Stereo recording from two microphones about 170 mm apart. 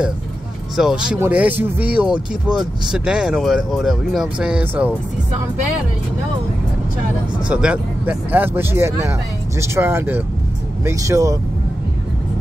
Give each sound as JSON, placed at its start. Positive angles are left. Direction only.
{"t": 0.7, "sound": "speech", "side_deg": -5}
{"t": 7.4, "sound": "speech", "side_deg": -5}